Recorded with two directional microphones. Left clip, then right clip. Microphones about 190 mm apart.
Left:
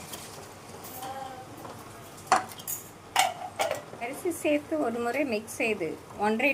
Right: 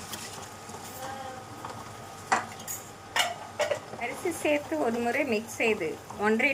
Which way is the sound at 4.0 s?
15° left (ahead or behind).